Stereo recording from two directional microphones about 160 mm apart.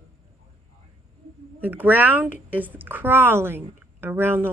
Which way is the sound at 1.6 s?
10° right (ahead or behind).